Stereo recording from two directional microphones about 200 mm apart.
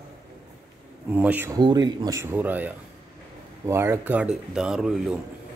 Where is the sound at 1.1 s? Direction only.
10° right (ahead or behind).